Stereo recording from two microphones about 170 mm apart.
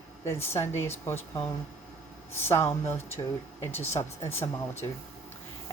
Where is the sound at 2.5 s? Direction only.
15° left (ahead or behind).